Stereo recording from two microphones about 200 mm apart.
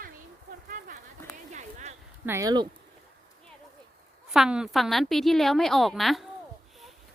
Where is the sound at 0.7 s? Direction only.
45° right (ahead or behind).